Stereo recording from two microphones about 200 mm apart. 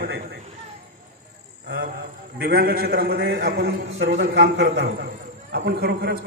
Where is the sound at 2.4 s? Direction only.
50° right (ahead or behind).